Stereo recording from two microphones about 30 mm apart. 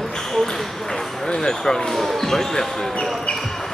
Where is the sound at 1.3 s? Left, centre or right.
Left.